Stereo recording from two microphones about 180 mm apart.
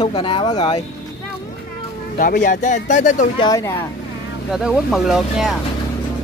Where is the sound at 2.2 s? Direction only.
45° left (ahead or behind).